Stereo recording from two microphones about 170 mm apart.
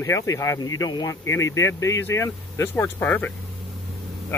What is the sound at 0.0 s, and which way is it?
Speech, 20° left (ahead or behind).